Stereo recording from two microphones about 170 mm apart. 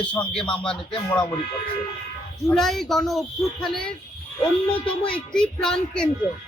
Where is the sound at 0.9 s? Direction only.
25° left (ahead or behind).